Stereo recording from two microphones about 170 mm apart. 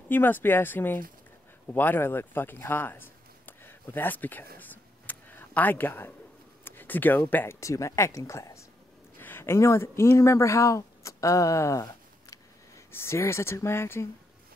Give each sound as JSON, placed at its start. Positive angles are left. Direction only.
{"t": 0.1, "sound": "speech", "side_deg": 10}
{"t": 4.6, "sound": "a sound", "side_deg": 10}
{"t": 6.6, "sound": "speech", "side_deg": 10}